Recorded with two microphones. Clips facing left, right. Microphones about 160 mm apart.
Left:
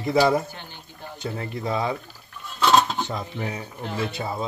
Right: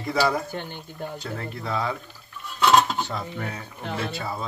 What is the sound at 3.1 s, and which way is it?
Speech, 20° left (ahead or behind).